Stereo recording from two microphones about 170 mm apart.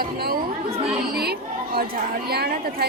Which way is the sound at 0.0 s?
65° right (ahead or behind).